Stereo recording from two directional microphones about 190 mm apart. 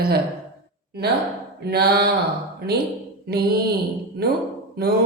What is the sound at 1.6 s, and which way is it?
Speech, 60° right (ahead or behind).